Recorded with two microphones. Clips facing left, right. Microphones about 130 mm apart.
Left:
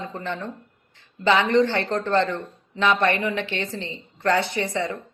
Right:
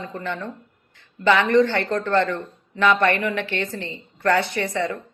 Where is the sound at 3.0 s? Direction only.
55° right (ahead or behind).